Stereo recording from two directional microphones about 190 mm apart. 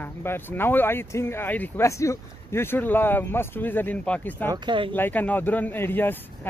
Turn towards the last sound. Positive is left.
turn(degrees=10)  # may be behind; listen again after turning